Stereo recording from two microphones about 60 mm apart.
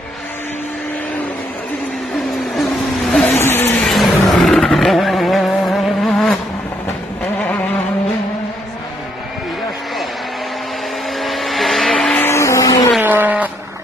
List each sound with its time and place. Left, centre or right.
3.3 s vehicle: left
3.8 s vehicle: centre
11.1 s vehicle: centre
11.9 s vehicle: centre
12.3 s vehicle: left
13.0 s vehicle: right